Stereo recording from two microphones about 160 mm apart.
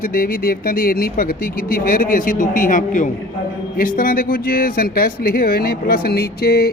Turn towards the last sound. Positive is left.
turn(degrees=75)  # may be behind; listen again after turning